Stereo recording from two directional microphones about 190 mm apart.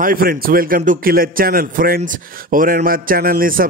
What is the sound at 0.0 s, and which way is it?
Speech, 50° right (ahead or behind).